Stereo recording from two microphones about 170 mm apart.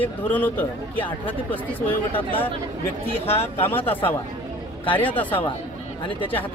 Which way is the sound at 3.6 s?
10° left (ahead or behind).